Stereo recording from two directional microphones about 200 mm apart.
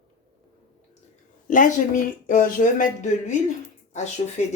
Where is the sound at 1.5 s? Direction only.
40° left (ahead or behind).